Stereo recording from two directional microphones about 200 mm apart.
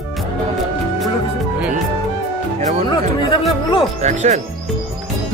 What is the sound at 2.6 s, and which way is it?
Music, 35° right (ahead or behind).